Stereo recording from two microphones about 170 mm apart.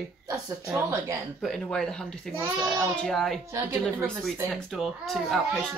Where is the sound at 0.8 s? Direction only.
15° right (ahead or behind).